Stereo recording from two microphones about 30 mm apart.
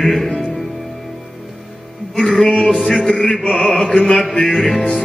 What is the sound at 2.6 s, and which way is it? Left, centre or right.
Music, centre.